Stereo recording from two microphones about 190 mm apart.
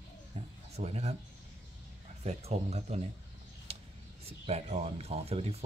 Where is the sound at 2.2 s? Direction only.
35° right (ahead or behind).